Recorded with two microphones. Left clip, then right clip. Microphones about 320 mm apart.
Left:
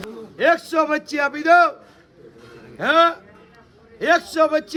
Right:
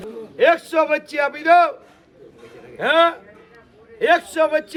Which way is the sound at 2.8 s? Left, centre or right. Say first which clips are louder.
Even; left.